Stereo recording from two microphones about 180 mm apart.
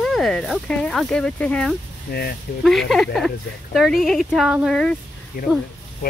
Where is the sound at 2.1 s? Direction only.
60° left (ahead or behind).